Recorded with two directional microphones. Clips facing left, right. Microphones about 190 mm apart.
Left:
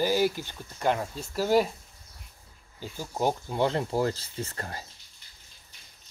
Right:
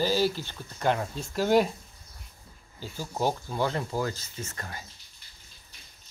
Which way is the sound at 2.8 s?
15° left (ahead or behind).